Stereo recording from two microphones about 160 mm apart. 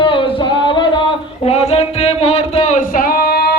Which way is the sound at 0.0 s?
30° left (ahead or behind).